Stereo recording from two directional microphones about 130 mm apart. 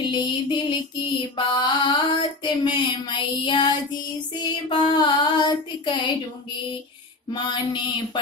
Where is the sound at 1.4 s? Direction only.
35° left (ahead or behind).